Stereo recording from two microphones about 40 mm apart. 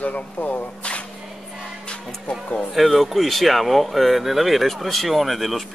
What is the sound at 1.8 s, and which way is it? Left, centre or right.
Music, left.